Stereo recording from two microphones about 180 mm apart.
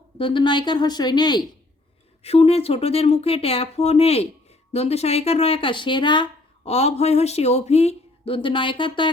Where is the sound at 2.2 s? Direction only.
35° left (ahead or behind).